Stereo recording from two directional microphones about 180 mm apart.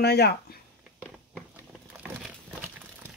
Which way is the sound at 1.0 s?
Centre (ahead or behind).